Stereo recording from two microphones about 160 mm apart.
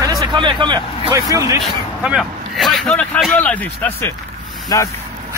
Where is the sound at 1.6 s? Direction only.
5° right (ahead or behind); by 4.9 s 20° left (ahead or behind).